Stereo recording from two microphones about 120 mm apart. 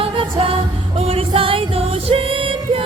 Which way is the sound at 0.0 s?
50° right (ahead or behind).